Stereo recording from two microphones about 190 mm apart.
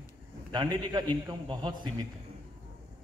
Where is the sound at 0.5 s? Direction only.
20° right (ahead or behind).